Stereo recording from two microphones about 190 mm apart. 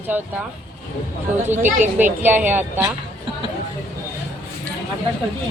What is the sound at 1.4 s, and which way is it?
Speech, 10° right (ahead or behind).